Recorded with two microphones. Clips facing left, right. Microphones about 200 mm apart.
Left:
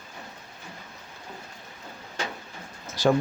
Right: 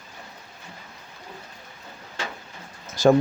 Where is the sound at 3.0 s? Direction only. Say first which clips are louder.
Right 5 dB; 45° right (ahead or behind).